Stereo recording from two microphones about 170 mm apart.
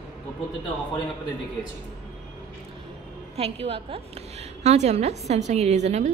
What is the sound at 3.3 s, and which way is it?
A woman's voice, 35° right (ahead or behind).